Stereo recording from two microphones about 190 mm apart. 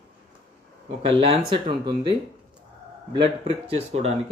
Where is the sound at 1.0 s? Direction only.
30° right (ahead or behind).